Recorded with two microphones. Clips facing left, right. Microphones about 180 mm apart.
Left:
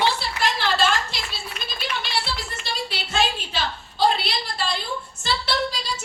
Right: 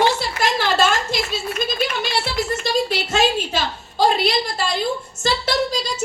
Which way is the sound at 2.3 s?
45° right (ahead or behind).